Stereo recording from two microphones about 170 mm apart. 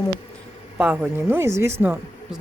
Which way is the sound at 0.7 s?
5° right (ahead or behind).